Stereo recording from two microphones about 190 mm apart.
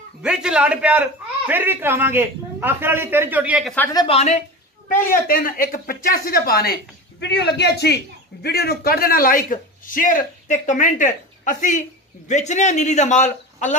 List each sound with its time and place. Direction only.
0.2 s a man's voice: 5° right (ahead or behind)
3.9 s a man's voice: 25° left (ahead or behind)
5.1 s a man's voice: 50° left (ahead or behind)